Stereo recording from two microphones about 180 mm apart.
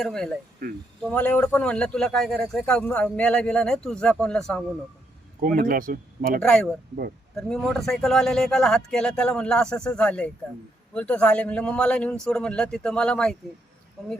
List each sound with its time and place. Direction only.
0.0 s speech: 5° left (ahead or behind)
0.6 s speech: 55° right (ahead or behind)
1.0 s speech: 10° left (ahead or behind)
5.4 s speech: 50° right (ahead or behind)
6.4 s speech: 5° left (ahead or behind)